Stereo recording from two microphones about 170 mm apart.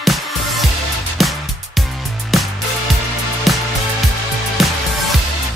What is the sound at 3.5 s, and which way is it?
Music, centre (ahead or behind).